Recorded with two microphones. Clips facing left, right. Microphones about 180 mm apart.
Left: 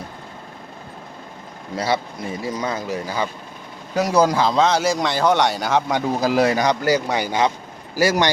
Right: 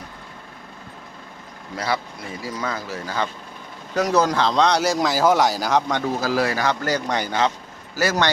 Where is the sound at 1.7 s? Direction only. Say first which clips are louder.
Left 3 dB; 25° left (ahead or behind); by 5.8 s centre (ahead or behind).